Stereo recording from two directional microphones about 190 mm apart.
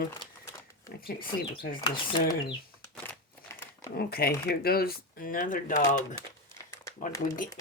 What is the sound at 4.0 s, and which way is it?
Speech, 55° left (ahead or behind).